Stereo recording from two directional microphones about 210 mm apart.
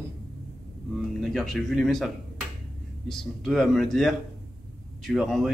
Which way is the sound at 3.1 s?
Centre (ahead or behind).